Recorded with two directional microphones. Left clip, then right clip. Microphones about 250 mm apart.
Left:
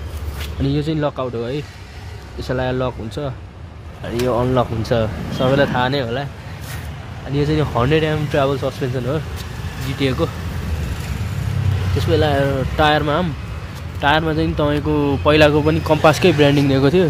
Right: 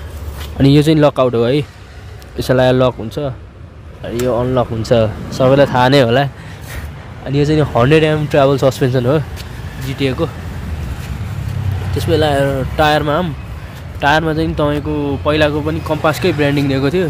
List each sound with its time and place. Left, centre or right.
0.6 s speech: right
5.8 s speech: right
7.3 s speech: centre
12.0 s speech: centre
14.9 s speech: centre